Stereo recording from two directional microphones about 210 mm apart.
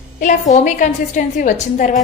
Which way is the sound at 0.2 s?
35° left (ahead or behind).